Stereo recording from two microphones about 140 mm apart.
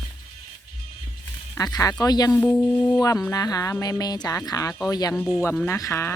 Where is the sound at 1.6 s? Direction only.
25° left (ahead or behind).